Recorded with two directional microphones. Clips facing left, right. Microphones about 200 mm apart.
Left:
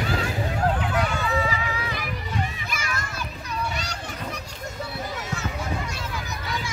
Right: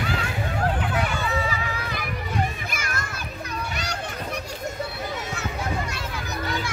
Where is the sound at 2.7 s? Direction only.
50° right (ahead or behind).